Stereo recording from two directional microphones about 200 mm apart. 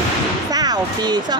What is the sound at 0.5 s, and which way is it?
Speech, 20° right (ahead or behind).